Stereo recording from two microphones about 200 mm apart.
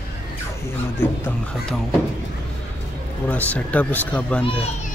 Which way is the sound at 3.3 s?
10° left (ahead or behind).